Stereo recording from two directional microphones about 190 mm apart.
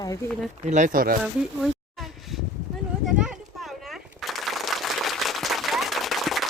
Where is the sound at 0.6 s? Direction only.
40° right (ahead or behind).